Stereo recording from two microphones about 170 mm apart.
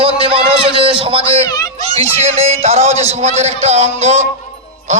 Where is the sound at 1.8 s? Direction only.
35° right (ahead or behind).